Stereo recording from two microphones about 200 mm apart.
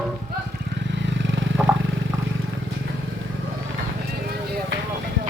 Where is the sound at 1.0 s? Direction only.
65° right (ahead or behind).